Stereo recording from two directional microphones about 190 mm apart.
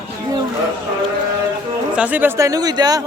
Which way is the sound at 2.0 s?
10° right (ahead or behind).